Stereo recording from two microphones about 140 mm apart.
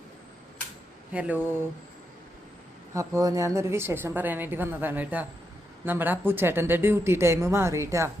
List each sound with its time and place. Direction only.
1.1 s a woman's voice: 10° right (ahead or behind)
2.9 s a woman's voice: 20° right (ahead or behind)